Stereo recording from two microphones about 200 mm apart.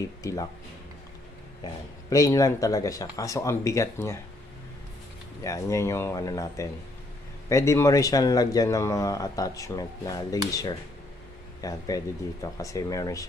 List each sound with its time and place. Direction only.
0.2 s speech: 15° left (ahead or behind)
2.0 s speech: 15° left (ahead or behind)
5.4 s speech: 15° left (ahead or behind)